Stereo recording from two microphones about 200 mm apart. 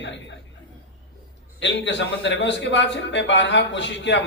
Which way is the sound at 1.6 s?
60° left (ahead or behind).